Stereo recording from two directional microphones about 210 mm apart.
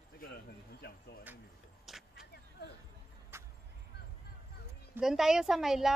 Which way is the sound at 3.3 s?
10° right (ahead or behind).